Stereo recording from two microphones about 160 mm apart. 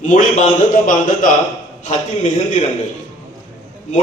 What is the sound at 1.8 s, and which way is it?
Speech, 45° left (ahead or behind).